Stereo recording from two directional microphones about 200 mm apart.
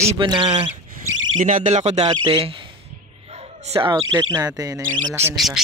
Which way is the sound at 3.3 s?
30° right (ahead or behind).